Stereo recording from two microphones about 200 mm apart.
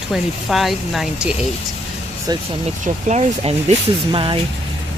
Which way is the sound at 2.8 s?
35° right (ahead or behind).